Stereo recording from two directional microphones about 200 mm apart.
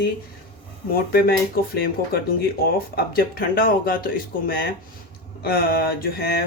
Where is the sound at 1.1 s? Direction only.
50° left (ahead or behind).